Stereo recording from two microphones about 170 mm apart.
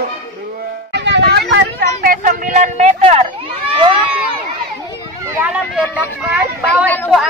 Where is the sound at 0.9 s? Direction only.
90° right.